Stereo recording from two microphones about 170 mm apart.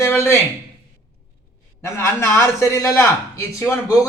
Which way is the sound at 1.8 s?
15° left (ahead or behind).